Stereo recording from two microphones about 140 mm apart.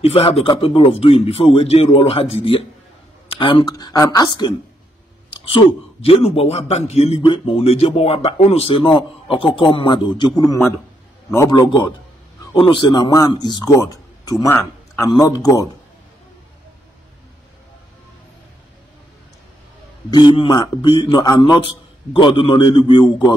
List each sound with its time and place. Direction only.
0.0 s speech: 45° left (ahead or behind)
7.2 s a man's voice: 40° left (ahead or behind)
12.5 s a man's voice: 35° left (ahead or behind)
20.1 s speech: 30° left (ahead or behind)